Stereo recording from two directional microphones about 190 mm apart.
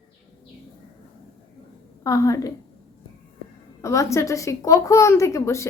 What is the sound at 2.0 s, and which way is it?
Speech, 15° left (ahead or behind).